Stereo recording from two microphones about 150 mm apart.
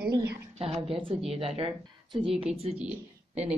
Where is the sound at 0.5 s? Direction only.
40° right (ahead or behind).